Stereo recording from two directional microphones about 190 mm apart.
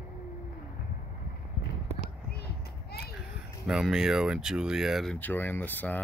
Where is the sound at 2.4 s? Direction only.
55° left (ahead or behind).